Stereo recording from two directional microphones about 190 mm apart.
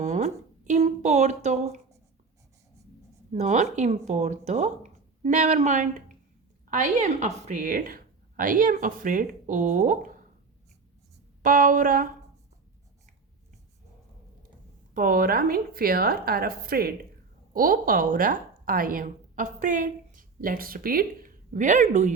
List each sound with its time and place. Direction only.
0.0 s a sound: 40° right (ahead or behind)
3.3 s speech: 40° right (ahead or behind)
11.4 s speech: 45° right (ahead or behind)
14.9 s a woman's voice: 45° right (ahead or behind)